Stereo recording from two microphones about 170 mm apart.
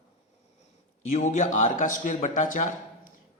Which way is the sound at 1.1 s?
45° left (ahead or behind).